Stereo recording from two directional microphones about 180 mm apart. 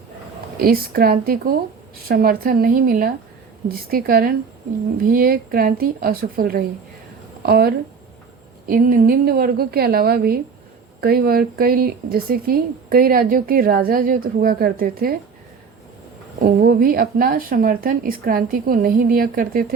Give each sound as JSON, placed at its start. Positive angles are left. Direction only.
{"t": 0.5, "sound": "speech", "side_deg": -55}
{"t": 16.4, "sound": "speech", "side_deg": -55}